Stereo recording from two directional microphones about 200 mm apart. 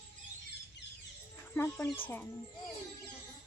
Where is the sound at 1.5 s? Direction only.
10° left (ahead or behind).